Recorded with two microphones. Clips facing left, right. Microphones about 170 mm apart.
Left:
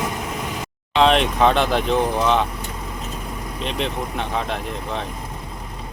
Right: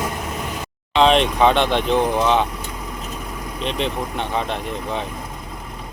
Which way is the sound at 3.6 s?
Centre (ahead or behind).